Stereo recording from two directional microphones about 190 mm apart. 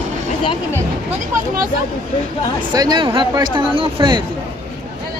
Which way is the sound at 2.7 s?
20° right (ahead or behind).